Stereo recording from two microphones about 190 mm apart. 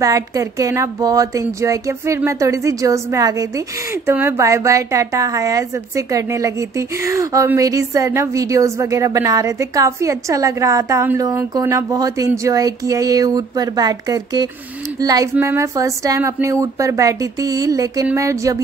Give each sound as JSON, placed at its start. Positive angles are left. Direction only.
{"t": 0.0, "sound": "a woman's voice", "side_deg": -20}